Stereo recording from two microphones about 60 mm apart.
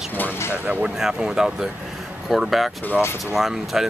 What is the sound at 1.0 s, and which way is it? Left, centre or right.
Speech, centre.